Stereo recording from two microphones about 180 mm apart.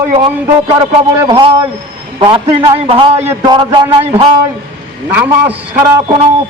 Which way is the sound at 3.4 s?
25° right (ahead or behind).